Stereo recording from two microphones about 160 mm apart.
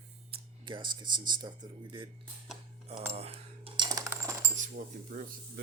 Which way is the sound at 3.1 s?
40° right (ahead or behind).